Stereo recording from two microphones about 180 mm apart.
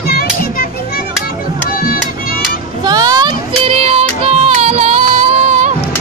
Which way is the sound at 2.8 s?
20° right (ahead or behind).